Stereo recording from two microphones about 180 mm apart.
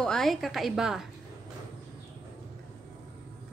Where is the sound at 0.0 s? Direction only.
Centre (ahead or behind).